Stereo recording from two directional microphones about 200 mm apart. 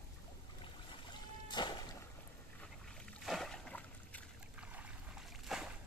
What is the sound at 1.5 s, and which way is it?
Music, 20° left (ahead or behind).